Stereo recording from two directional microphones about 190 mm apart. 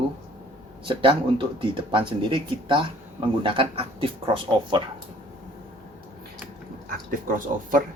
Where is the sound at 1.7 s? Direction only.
25° right (ahead or behind).